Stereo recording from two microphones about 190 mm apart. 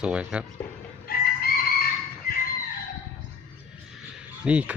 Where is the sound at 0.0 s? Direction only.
5° right (ahead or behind).